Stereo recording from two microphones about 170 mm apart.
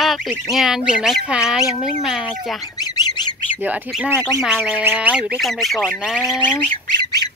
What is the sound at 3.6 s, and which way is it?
Speech, 5° right (ahead or behind).